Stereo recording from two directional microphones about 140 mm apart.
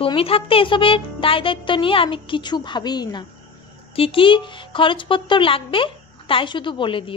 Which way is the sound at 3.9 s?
40° left (ahead or behind).